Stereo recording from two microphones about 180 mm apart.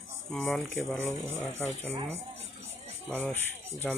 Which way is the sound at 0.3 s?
5° left (ahead or behind).